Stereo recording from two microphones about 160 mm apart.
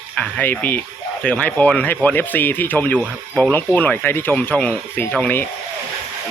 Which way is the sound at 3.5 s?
10° left (ahead or behind).